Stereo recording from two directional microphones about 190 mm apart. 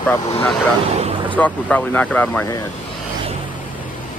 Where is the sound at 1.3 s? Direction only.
5° left (ahead or behind).